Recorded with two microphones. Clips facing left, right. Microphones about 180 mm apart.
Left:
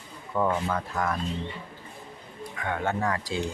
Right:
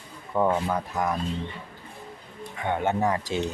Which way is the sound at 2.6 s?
20° right (ahead or behind).